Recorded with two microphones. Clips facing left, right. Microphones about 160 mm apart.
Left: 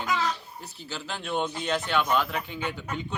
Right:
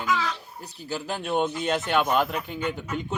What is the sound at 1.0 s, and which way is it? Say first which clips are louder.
A man's voice: right 4 dB; 40° right (ahead or behind).